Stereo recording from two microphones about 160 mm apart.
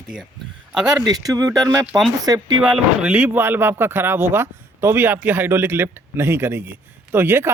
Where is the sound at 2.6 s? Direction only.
5° right (ahead or behind).